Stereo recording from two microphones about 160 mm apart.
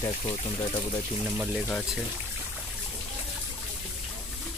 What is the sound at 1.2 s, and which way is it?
Speech, 5° right (ahead or behind).